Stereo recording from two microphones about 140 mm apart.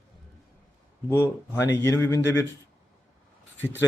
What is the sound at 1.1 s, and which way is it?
Speech, 20° left (ahead or behind).